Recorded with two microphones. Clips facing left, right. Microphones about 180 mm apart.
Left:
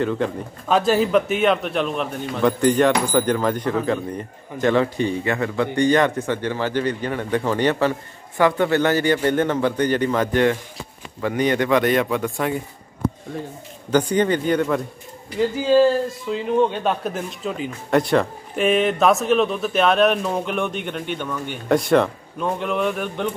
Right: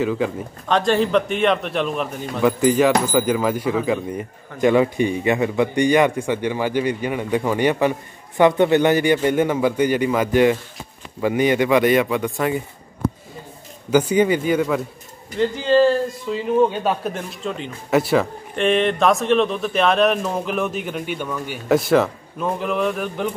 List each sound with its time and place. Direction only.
0.0 s a man's voice: 5° right (ahead or behind)
13.8 s speech: 10° right (ahead or behind)
15.3 s a man's voice: 5° left (ahead or behind)